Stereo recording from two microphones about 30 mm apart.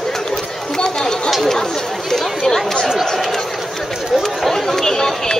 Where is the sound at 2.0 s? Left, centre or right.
Centre.